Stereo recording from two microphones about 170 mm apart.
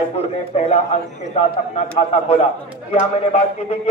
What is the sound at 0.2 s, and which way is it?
Speech, 35° left (ahead or behind).